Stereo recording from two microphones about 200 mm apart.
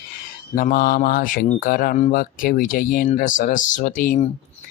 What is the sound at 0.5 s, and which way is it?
Speech, 45° left (ahead or behind).